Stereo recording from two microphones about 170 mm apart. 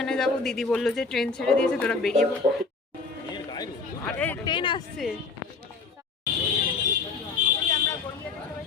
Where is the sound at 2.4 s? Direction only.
30° right (ahead or behind).